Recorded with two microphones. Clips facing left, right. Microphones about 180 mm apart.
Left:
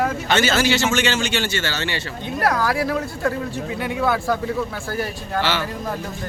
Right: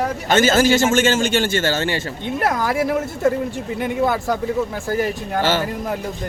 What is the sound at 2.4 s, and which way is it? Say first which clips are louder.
A woman's voice: even; 20° right (ahead or behind).